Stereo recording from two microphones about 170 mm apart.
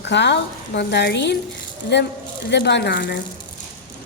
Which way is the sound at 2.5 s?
90° left.